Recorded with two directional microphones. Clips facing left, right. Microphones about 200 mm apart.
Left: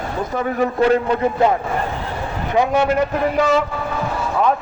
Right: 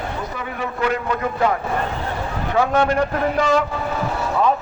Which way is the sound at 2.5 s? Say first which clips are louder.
Left 1 dB; 15° left (ahead or behind).